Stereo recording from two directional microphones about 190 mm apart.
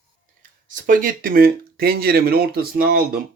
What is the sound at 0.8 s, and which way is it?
Speech, 45° right (ahead or behind).